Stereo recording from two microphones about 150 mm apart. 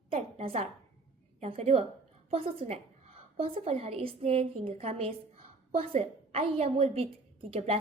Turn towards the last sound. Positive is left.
turn(degrees=-40)  # may be behind; listen again after turning